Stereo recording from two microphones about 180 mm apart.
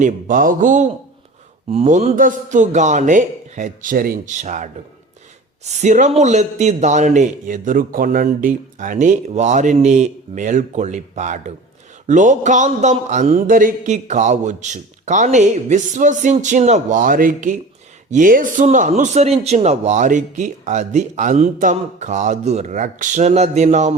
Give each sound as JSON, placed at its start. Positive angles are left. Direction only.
{"t": 0.0, "sound": "a man's voice", "side_deg": -50}